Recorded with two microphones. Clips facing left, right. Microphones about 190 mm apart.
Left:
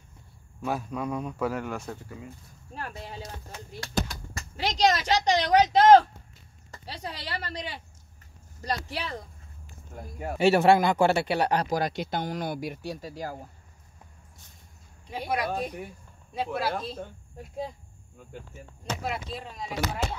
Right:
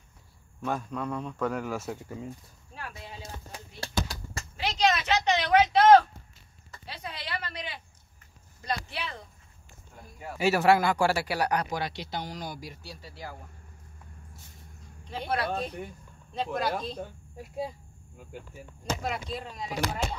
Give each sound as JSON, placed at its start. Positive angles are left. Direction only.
{"t": 0.6, "sound": "speech", "side_deg": 10}
{"t": 2.7, "sound": "speech", "side_deg": 40}
{"t": 3.8, "sound": "a sound", "side_deg": -30}
{"t": 4.6, "sound": "speech", "side_deg": 35}
{"t": 6.7, "sound": "speech", "side_deg": 40}
{"t": 9.9, "sound": "speech", "side_deg": 50}
{"t": 10.3, "sound": "speech", "side_deg": 30}
{"t": 15.0, "sound": "speech", "side_deg": 10}
{"t": 19.0, "sound": "speech", "side_deg": 0}